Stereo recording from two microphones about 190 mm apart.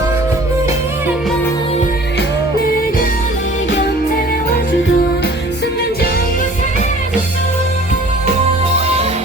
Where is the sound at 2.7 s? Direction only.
50° left (ahead or behind).